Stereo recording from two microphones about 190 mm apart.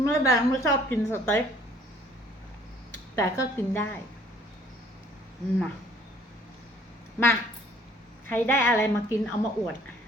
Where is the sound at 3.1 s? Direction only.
15° left (ahead or behind).